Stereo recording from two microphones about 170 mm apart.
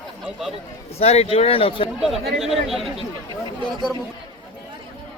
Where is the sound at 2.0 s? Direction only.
Centre (ahead or behind).